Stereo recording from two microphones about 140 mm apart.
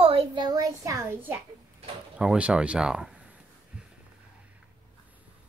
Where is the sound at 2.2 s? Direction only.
10° right (ahead or behind).